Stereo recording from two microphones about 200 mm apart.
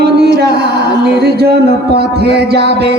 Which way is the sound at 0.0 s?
55° right (ahead or behind).